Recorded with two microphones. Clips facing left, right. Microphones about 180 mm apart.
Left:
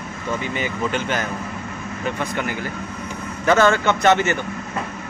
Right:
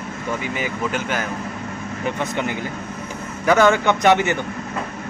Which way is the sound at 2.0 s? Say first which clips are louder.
Right 1 dB; 20° right (ahead or behind).